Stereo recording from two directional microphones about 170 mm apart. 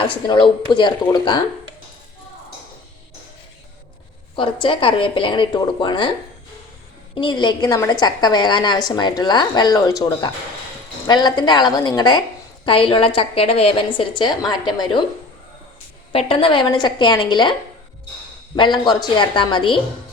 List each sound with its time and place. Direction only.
0.0 s a woman's voice: 30° left (ahead or behind)
4.6 s a woman's voice: 30° left (ahead or behind)
7.2 s a woman's voice: 25° left (ahead or behind)
16.1 s a woman's voice: 30° left (ahead or behind)
18.5 s a woman's voice: 25° left (ahead or behind)